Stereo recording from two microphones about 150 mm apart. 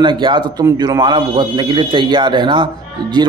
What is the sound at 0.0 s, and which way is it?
A man's voice, 30° right (ahead or behind).